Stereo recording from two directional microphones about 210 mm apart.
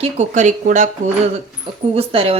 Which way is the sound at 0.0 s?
35° right (ahead or behind).